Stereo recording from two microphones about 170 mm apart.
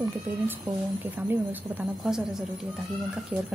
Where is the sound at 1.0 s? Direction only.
10° right (ahead or behind).